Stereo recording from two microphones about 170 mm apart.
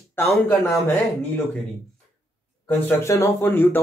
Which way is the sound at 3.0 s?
15° left (ahead or behind).